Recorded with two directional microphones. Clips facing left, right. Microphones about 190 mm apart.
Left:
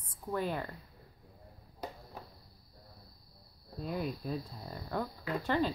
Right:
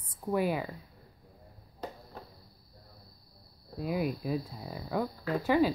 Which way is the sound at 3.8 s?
5° right (ahead or behind).